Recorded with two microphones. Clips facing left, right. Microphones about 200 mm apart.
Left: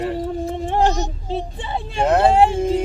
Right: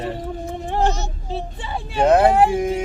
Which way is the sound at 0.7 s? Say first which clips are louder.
Left 2 dB; 15° left (ahead or behind).